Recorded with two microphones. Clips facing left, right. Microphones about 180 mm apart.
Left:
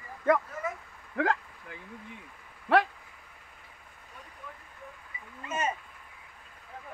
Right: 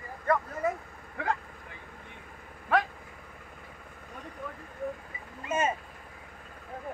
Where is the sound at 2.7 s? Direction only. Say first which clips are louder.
Left 3 dB; 70° left (ahead or behind).